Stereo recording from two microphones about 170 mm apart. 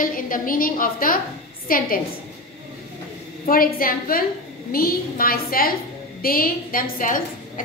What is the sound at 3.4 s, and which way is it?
A woman's voice, 55° left (ahead or behind).